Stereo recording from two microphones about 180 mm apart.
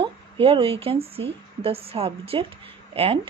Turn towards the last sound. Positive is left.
turn(degrees=-30)  # may be behind; listen again after turning